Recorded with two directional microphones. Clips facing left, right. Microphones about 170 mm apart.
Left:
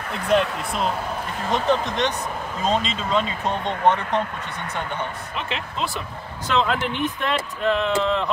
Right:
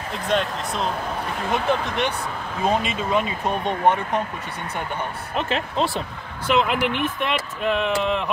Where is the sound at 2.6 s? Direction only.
10° right (ahead or behind).